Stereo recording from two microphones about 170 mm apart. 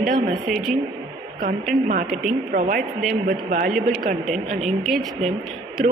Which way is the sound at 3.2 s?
50° right (ahead or behind).